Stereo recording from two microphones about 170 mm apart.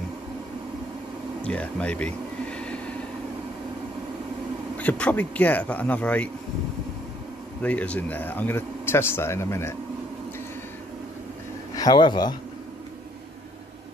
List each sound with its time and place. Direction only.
1.4 s a sound: 5° left (ahead or behind)
4.7 s speech: 10° left (ahead or behind)
7.6 s speech: 10° left (ahead or behind)
11.7 s speech: 25° left (ahead or behind)